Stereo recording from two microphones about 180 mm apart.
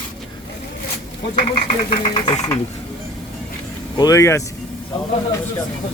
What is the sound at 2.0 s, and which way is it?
Speech, 30° left (ahead or behind).